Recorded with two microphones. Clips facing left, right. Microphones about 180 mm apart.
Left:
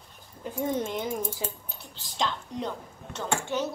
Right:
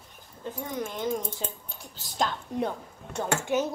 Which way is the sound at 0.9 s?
5° left (ahead or behind).